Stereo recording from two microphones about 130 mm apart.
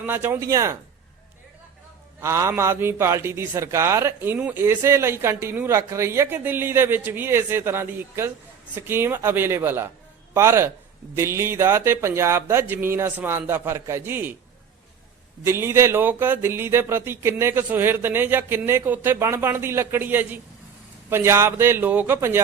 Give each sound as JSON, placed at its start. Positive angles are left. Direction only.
{"t": 0.0, "sound": "speech", "side_deg": -15}
{"t": 2.2, "sound": "a man's voice", "side_deg": -20}
{"t": 15.4, "sound": "speech", "side_deg": -20}